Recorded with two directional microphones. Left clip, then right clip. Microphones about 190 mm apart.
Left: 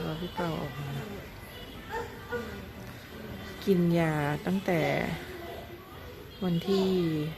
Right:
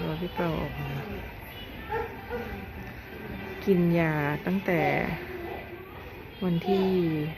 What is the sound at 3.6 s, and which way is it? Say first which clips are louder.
Speech: right 2 dB; 15° left (ahead or behind).